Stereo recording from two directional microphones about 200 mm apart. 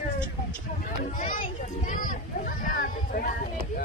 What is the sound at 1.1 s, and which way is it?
A child's voice, 40° left (ahead or behind).